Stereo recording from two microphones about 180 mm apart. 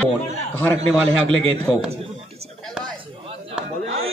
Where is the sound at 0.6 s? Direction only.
5° left (ahead or behind).